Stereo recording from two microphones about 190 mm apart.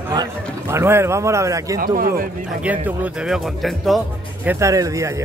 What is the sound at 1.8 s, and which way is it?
Speech, 50° right (ahead or behind).